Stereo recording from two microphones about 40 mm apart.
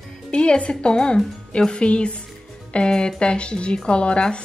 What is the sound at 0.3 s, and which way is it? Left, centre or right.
A woman's voice, left.